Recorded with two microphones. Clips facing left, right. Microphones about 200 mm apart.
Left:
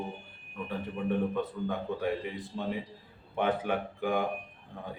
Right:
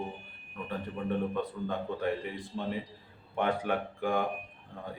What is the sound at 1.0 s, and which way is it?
Speech, 10° left (ahead or behind).